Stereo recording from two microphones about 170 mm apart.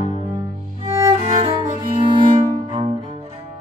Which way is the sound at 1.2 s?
40° right (ahead or behind).